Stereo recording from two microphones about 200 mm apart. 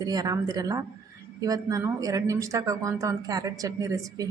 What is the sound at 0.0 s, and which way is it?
A woman's voice, 20° right (ahead or behind).